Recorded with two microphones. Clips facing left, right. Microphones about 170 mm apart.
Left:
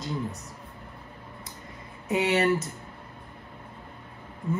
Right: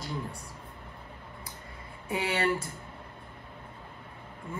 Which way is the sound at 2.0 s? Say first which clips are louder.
Left 5 dB; 25° left (ahead or behind).